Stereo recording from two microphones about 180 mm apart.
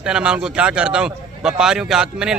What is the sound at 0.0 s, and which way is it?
A man's voice, 5° right (ahead or behind).